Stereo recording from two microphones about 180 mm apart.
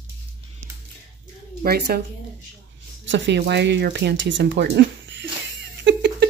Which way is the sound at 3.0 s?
80° right.